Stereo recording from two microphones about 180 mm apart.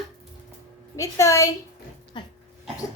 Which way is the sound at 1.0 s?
15° left (ahead or behind).